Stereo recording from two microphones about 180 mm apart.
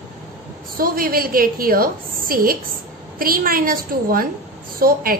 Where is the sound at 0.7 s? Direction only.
55° right (ahead or behind).